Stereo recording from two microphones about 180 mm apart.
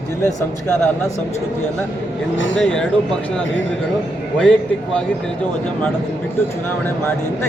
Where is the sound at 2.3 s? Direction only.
90° left.